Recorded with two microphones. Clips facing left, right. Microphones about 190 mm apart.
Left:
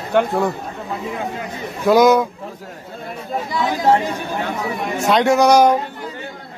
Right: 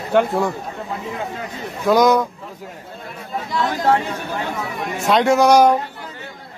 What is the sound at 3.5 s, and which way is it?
Speech, 10° left (ahead or behind).